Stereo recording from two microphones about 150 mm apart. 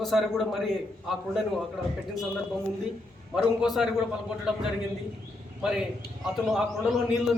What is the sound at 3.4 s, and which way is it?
Speech, centre (ahead or behind).